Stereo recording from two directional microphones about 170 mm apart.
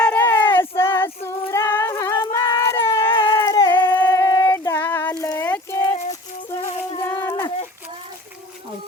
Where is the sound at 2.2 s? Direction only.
20° left (ahead or behind).